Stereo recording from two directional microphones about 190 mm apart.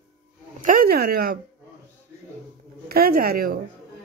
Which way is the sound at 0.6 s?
50° right (ahead or behind).